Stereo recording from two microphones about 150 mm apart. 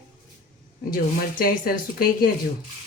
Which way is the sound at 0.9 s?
75° left (ahead or behind).